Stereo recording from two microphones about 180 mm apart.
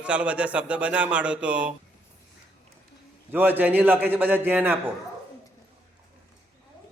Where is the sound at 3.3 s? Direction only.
10° right (ahead or behind).